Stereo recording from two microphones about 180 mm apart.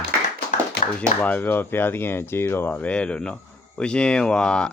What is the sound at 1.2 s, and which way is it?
Speech, 10° left (ahead or behind).